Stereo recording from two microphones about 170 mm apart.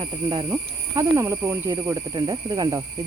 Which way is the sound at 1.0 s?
20° right (ahead or behind).